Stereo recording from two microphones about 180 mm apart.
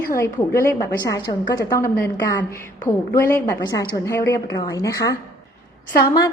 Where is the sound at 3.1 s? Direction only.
15° left (ahead or behind).